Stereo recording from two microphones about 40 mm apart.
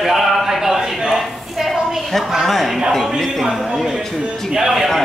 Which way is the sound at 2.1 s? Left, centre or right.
Centre.